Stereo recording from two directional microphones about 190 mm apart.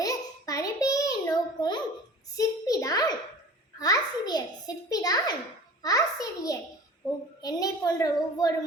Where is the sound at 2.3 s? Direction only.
20° left (ahead or behind).